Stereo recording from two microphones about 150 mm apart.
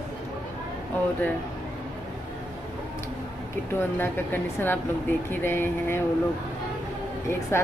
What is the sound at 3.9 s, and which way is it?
Speech, 15° left (ahead or behind).